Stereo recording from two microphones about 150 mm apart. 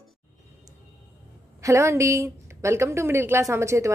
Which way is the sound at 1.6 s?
20° right (ahead or behind).